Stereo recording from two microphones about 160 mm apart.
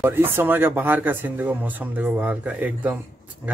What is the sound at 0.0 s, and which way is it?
Speech, 15° right (ahead or behind).